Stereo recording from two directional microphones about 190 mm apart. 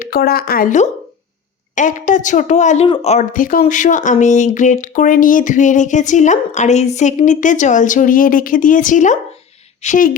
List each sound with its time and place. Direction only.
0.0 s speech: 50° left (ahead or behind)